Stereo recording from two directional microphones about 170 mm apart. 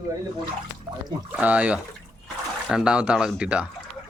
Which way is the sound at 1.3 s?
5° right (ahead or behind).